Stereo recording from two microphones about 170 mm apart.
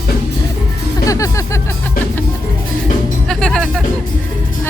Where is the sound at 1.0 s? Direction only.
20° left (ahead or behind).